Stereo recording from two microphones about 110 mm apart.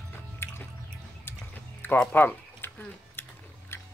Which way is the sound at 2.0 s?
15° left (ahead or behind).